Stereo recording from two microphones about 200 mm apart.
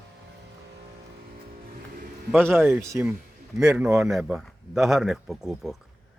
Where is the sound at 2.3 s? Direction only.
10° right (ahead or behind).